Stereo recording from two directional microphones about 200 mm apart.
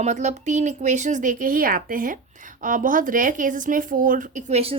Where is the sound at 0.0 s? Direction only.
35° right (ahead or behind).